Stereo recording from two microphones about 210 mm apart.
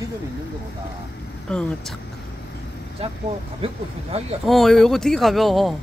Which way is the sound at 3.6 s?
30° right (ahead or behind).